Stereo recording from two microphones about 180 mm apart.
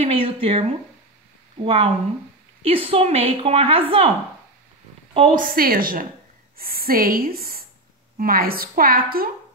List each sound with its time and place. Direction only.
0.0 s a woman's voice: 30° right (ahead or behind)
5.3 s a woman's voice: 50° right (ahead or behind)